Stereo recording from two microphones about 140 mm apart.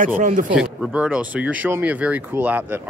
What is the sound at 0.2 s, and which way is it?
Speech, 70° right (ahead or behind).